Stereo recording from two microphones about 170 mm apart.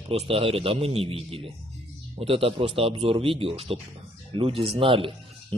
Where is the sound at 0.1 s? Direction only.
35° right (ahead or behind).